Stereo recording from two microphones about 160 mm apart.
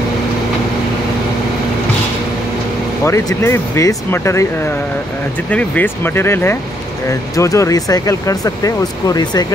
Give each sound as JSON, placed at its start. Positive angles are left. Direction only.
{"t": 3.0, "sound": "speech", "side_deg": 15}
{"t": 5.5, "sound": "speech", "side_deg": 10}